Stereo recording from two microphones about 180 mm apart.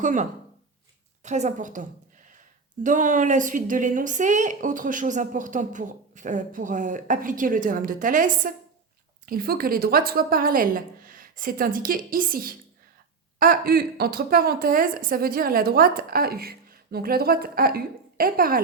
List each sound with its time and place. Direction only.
0.0 s a woman's voice: 45° right (ahead or behind)